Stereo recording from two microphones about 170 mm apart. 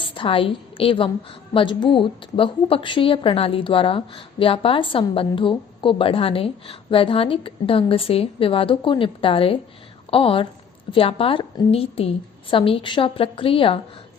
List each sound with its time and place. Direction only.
0.0 s a woman's voice: 30° left (ahead or behind)